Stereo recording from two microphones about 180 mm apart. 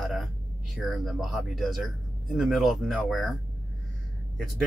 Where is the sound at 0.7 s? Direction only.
Centre (ahead or behind).